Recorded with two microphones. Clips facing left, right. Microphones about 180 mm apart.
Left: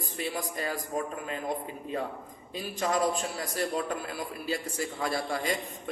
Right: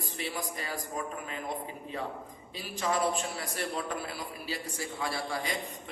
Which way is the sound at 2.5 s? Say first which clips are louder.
Left 2 dB; 40° left (ahead or behind).